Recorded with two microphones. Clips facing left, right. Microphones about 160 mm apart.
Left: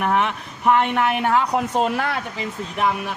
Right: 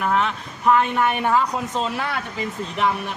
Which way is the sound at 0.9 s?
70° left (ahead or behind).